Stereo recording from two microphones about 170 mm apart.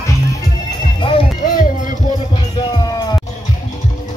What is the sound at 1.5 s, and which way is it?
Music, 50° left (ahead or behind).